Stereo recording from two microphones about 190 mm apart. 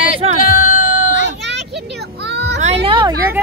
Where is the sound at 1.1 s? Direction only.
65° right (ahead or behind).